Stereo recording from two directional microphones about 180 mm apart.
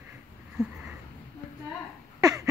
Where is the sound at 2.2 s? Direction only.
20° right (ahead or behind).